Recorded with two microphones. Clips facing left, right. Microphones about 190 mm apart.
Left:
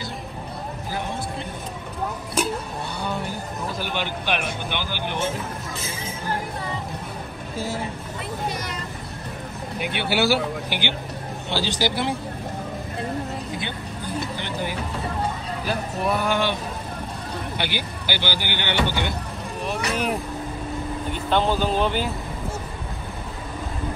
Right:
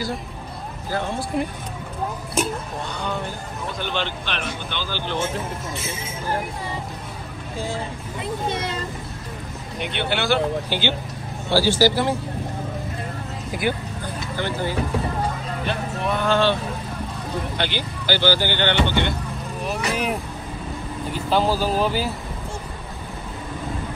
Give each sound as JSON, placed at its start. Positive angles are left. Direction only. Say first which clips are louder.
{"t": 3.9, "sound": "speech", "louder": "left 3 dB", "side_deg": 10}
{"t": 8.5, "sound": "speech", "louder": "right 5 dB", "side_deg": -25}
{"t": 9.9, "sound": "speech", "louder": "even", "side_deg": 5}
{"t": 14.0, "sound": "vehicle", "louder": "right 2 dB", "side_deg": 15}
{"t": 15.6, "sound": "speech", "louder": "left 1 dB", "side_deg": 5}
{"t": 17.6, "sound": "speech", "louder": "right 2 dB", "side_deg": 10}
{"t": 19.6, "sound": "vehicle", "louder": "right 1 dB", "side_deg": 0}
{"t": 21.3, "sound": "speech", "louder": "right 1 dB", "side_deg": -5}